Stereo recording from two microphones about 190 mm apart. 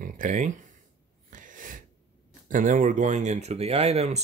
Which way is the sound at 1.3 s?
45° right (ahead or behind).